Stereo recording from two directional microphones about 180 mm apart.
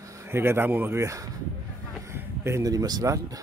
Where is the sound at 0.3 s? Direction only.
15° right (ahead or behind).